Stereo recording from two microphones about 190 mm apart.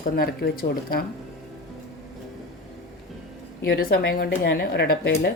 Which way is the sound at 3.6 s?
55° left (ahead or behind).